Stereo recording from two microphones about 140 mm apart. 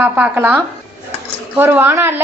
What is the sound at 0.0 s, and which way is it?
A woman's voice, 15° right (ahead or behind).